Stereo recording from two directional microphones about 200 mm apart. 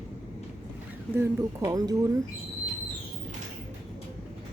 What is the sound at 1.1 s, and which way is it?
Speech, 15° right (ahead or behind).